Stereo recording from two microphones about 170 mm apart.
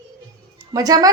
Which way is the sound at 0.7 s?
20° right (ahead or behind).